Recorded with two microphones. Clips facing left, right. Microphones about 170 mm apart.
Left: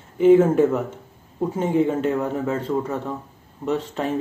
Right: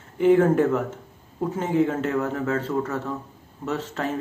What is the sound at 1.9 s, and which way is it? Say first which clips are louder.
Speech: left 3 dB; 10° left (ahead or behind).